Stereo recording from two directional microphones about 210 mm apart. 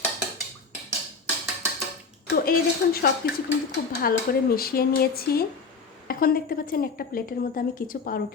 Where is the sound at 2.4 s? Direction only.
45° left (ahead or behind).